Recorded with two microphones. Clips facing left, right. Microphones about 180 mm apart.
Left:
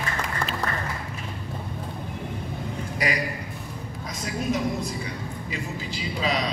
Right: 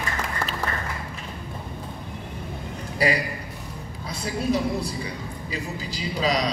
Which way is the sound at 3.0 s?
30° right (ahead or behind).